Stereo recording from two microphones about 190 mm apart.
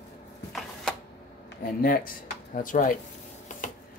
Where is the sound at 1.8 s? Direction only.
50° left (ahead or behind).